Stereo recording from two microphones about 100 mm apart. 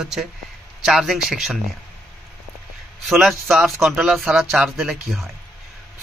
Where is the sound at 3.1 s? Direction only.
Centre (ahead or behind).